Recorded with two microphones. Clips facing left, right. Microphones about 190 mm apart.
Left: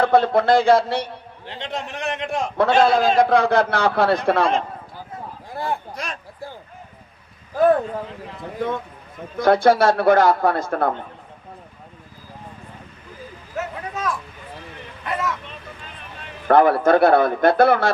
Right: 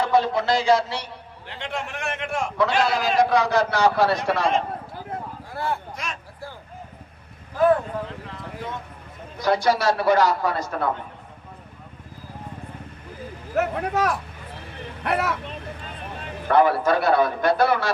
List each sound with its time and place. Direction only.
0.0 s a man's voice: 55° left (ahead or behind)
1.5 s a man's voice: 20° left (ahead or behind)
2.6 s a man's voice: 55° left (ahead or behind)
5.5 s speech: 15° left (ahead or behind)
5.9 s speech: 35° left (ahead or behind)
9.4 s a man's voice: 55° left (ahead or behind)
13.5 s speech: 60° right (ahead or behind)
16.5 s a man's voice: 55° left (ahead or behind)